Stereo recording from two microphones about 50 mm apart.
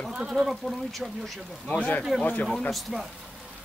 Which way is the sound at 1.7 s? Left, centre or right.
Left.